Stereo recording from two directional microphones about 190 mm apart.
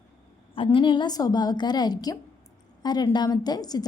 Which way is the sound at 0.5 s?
25° left (ahead or behind).